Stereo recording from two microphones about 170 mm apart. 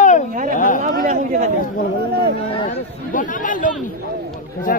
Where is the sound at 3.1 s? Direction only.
50° left (ahead or behind).